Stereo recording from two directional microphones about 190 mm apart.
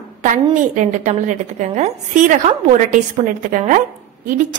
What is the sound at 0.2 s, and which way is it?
A woman's voice, 40° right (ahead or behind).